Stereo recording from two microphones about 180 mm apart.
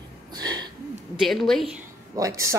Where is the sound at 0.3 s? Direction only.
20° right (ahead or behind).